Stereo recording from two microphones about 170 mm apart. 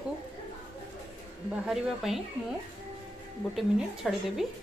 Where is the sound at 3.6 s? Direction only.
Centre (ahead or behind).